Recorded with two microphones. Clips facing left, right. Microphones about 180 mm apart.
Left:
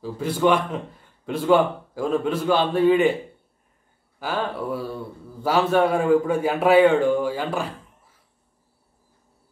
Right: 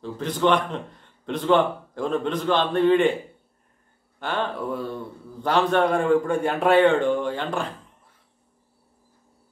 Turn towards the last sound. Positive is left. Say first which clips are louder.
# left 1 dB
turn(degrees=5)  # may be behind; listen again after turning